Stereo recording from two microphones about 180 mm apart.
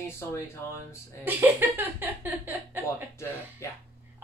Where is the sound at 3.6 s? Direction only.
15° left (ahead or behind).